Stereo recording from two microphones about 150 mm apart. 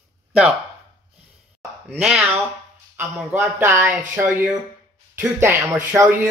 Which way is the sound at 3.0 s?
15° right (ahead or behind).